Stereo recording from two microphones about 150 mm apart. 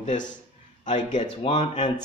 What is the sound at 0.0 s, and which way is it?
A man's voice, 55° left (ahead or behind).